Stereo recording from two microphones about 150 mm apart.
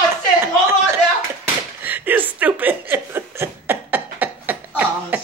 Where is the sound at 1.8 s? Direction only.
10° right (ahead or behind).